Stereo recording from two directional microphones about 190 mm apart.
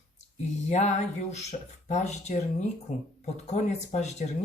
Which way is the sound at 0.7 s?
35° left (ahead or behind).